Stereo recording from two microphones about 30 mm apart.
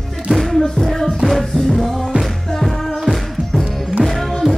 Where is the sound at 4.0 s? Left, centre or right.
Centre.